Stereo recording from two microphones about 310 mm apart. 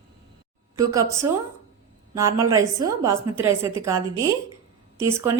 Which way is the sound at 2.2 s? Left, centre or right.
Centre.